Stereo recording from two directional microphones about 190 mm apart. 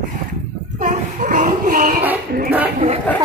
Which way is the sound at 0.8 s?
40° right (ahead or behind).